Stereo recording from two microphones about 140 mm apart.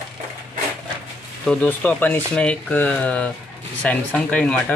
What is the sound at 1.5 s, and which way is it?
Speech, 10° left (ahead or behind).